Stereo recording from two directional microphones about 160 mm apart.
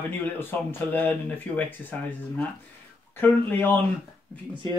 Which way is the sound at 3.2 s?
10° left (ahead or behind).